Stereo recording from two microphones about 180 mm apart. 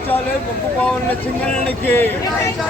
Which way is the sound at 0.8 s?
10° left (ahead or behind).